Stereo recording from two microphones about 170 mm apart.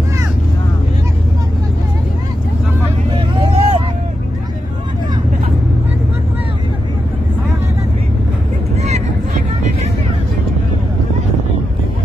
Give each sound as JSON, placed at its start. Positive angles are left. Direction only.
{"t": 3.2, "sound": "vehicle", "side_deg": -35}
{"t": 8.7, "sound": "vehicle", "side_deg": -40}